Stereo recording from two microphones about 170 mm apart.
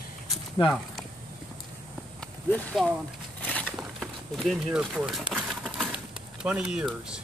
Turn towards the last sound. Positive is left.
turn(degrees=-5)  # may be behind; listen again after turning